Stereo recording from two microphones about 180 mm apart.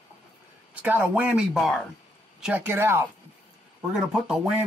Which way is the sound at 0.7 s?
10° right (ahead or behind).